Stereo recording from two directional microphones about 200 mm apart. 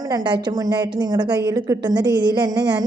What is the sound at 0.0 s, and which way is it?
A woman's voice, 20° right (ahead or behind).